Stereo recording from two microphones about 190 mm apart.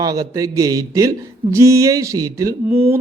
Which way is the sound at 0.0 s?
20° right (ahead or behind).